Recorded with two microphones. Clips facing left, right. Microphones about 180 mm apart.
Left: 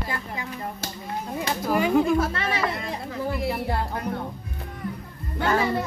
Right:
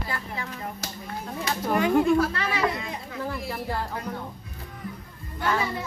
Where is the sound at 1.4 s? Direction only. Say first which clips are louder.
Left 1 dB; 10° left (ahead or behind).